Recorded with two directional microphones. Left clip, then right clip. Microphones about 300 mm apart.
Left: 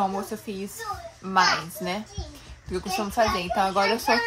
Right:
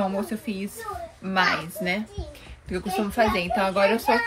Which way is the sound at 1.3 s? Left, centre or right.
Centre.